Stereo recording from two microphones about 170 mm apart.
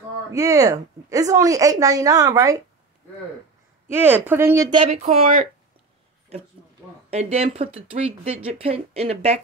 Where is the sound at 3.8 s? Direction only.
10° right (ahead or behind).